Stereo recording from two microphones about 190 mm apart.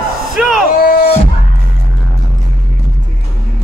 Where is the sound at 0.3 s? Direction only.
5° right (ahead or behind).